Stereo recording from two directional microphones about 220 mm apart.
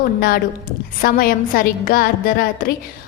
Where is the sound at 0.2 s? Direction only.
40° left (ahead or behind).